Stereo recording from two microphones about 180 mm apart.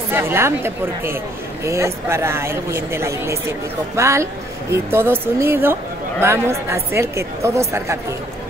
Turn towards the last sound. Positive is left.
turn(degrees=-15)  # may be behind; listen again after turning